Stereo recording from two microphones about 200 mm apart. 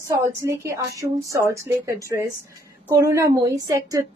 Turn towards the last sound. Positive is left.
turn(degrees=-15)  # may be behind; listen again after turning